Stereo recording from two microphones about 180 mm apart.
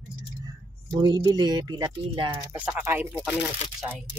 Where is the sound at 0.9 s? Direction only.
25° right (ahead or behind).